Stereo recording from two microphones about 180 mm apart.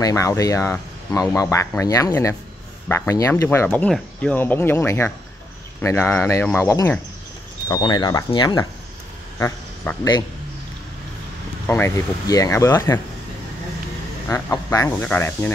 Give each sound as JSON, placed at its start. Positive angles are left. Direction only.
{"t": 0.0, "sound": "speech", "side_deg": 15}
{"t": 11.6, "sound": "speech", "side_deg": 15}
{"t": 14.3, "sound": "speech", "side_deg": 15}